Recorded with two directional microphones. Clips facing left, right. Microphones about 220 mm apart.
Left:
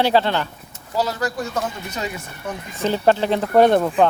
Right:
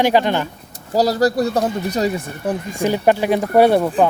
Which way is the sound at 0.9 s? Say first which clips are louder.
Right 7 dB; 40° right (ahead or behind).